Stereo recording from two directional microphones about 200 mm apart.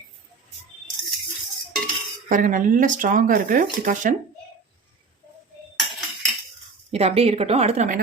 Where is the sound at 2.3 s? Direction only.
40° right (ahead or behind).